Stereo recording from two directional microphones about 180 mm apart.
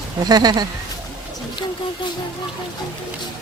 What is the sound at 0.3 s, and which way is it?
Speech, 20° right (ahead or behind).